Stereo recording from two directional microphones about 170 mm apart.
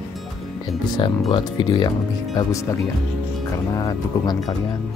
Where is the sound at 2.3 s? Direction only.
20° left (ahead or behind).